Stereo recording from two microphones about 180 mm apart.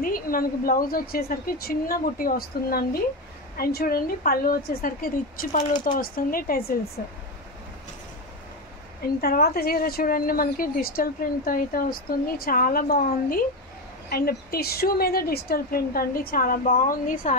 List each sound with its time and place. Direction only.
0.0 s a woman's voice: 50° left (ahead or behind)
9.2 s a woman's voice: 60° left (ahead or behind)